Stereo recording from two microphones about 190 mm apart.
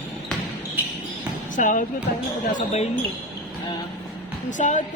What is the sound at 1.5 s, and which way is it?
Speech, 45° left (ahead or behind).